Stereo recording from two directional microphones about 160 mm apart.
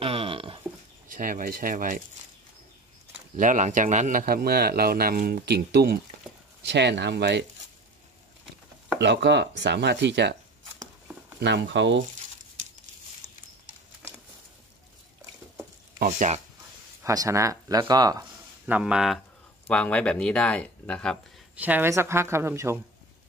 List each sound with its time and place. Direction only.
0.0 s a sound: 35° right (ahead or behind)
1.0 s speech: 55° right (ahead or behind)
3.3 s speech: 50° right (ahead or behind); by 7.4 s 90° right
9.0 s speech: 90° right
11.3 s speech: 90° right
16.0 s speech: 50° right (ahead or behind)
17.0 s speech: 20° right (ahead or behind)
18.7 s speech: 5° right (ahead or behind)
19.7 s speech: 5° left (ahead or behind)
21.5 s a woman's voice: 10° right (ahead or behind)